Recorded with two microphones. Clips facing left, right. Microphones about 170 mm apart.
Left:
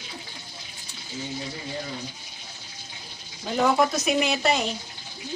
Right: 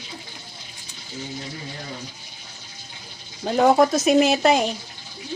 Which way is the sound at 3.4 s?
45° right (ahead or behind).